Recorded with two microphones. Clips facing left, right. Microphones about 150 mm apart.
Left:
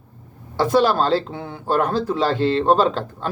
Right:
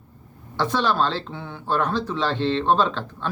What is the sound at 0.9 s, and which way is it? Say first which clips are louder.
Speech: left 5 dB; 40° left (ahead or behind).